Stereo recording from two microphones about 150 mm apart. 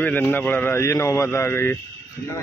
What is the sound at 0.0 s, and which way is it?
A man's voice, 10° left (ahead or behind).